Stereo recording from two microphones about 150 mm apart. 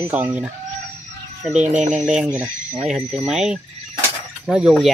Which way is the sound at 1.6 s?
55° right (ahead or behind).